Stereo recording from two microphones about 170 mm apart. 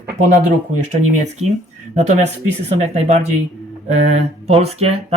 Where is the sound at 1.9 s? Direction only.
40° right (ahead or behind).